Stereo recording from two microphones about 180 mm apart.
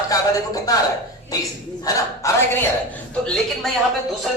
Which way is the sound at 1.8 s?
20° left (ahead or behind).